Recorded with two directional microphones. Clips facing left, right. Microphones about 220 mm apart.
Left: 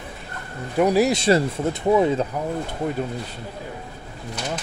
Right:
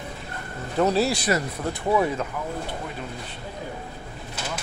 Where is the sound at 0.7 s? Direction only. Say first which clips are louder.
Left 4 dB; 15° left (ahead or behind).